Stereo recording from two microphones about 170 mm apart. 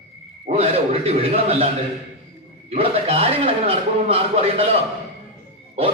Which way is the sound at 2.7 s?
35° right (ahead or behind).